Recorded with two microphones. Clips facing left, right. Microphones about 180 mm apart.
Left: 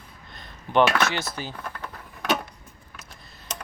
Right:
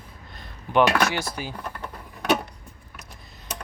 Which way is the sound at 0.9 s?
10° right (ahead or behind).